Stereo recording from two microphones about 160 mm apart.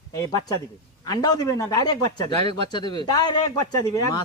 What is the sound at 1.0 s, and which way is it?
A man's voice, 25° left (ahead or behind).